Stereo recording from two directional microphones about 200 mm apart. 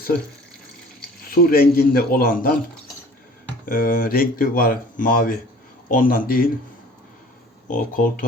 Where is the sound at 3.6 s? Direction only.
45° left (ahead or behind).